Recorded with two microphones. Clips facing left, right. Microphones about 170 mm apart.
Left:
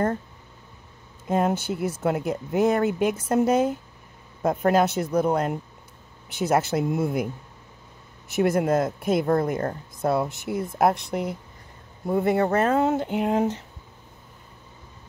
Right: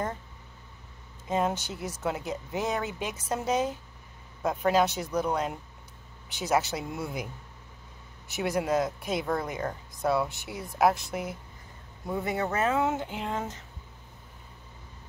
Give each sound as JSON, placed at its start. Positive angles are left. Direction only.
{"t": 1.2, "sound": "speech", "side_deg": 55}
{"t": 8.3, "sound": "speech", "side_deg": 50}
{"t": 11.0, "sound": "speech", "side_deg": 0}
{"t": 12.2, "sound": "speech", "side_deg": 55}